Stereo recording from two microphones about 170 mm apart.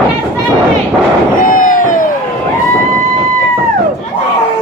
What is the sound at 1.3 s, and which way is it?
Fireworks, 55° left (ahead or behind).